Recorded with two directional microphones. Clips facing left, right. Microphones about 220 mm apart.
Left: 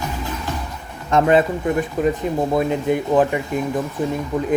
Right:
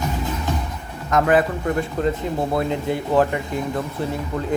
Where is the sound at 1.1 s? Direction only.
25° left (ahead or behind).